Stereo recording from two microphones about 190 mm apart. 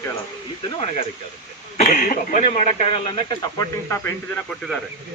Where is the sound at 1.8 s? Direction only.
45° left (ahead or behind).